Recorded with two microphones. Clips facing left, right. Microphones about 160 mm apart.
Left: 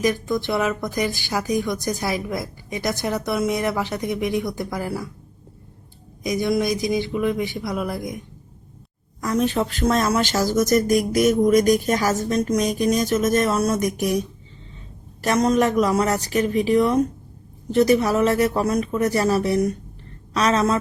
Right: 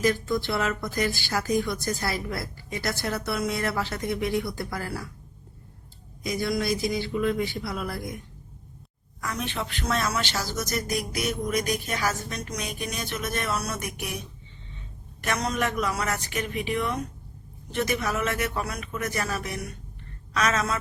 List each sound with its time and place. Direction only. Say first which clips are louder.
0.0 s a woman's voice: left 3 dB; 15° left (ahead or behind)
6.2 s a woman's voice: left 6 dB; 20° left (ahead or behind)
9.2 s speech: left 11 dB; 35° left (ahead or behind)
15.2 s speech: left 9 dB; 40° left (ahead or behind)